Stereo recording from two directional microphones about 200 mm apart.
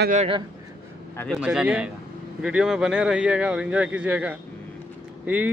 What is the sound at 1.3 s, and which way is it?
Speech, 5° right (ahead or behind).